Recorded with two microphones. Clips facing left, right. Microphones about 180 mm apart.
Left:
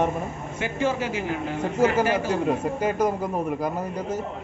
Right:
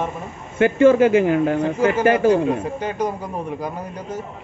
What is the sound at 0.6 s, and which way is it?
Speech, 55° right (ahead or behind).